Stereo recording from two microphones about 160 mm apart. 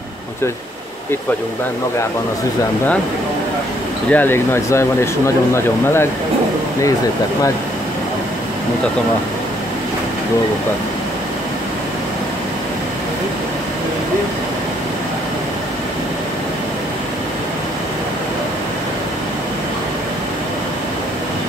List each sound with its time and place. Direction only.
4.1 s speech: 10° left (ahead or behind)